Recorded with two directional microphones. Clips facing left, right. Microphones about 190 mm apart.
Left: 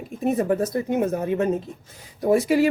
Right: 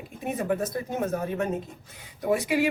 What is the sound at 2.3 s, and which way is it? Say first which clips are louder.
Speech: left 6 dB; 40° left (ahead or behind).